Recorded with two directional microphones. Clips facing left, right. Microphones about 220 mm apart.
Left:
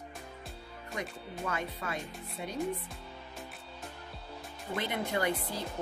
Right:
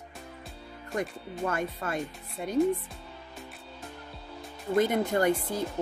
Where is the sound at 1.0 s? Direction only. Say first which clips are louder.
Right 7 dB; 50° right (ahead or behind).